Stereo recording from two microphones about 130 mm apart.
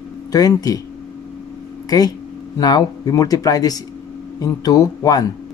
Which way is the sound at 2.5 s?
30° left (ahead or behind).